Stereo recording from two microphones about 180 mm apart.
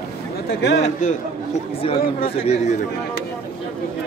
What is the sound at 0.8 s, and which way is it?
A man's voice, 40° left (ahead or behind).